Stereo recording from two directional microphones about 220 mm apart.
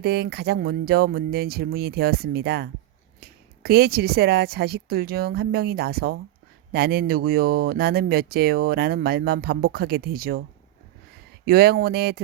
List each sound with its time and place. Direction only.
0.0 s speech: 45° right (ahead or behind)
11.4 s speech: 45° right (ahead or behind)